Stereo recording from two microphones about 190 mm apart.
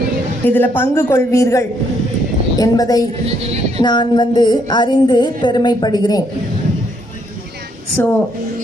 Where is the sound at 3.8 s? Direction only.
25° left (ahead or behind).